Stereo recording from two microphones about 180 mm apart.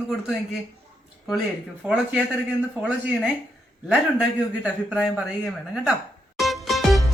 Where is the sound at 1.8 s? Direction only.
Centre (ahead or behind).